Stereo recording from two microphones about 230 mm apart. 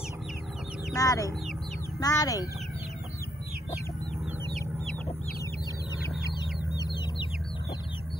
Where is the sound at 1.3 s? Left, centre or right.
Centre.